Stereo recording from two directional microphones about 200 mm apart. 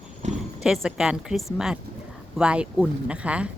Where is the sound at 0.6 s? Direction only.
Centre (ahead or behind).